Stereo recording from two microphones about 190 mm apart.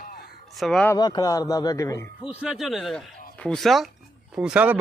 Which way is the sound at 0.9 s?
20° left (ahead or behind).